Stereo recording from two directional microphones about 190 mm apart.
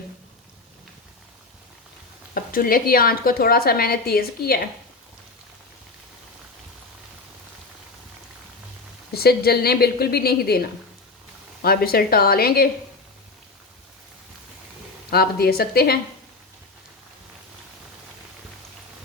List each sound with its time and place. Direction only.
2.3 s a woman's voice: 50° left (ahead or behind)
9.1 s a woman's voice: 55° left (ahead or behind)
11.6 s a woman's voice: 55° left (ahead or behind)
15.1 s a woman's voice: 55° left (ahead or behind)